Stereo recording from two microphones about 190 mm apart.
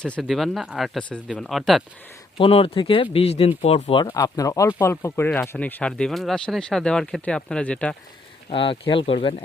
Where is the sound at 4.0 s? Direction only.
20° left (ahead or behind).